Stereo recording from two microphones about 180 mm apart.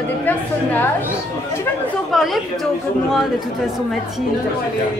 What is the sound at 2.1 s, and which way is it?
Speech, centre (ahead or behind).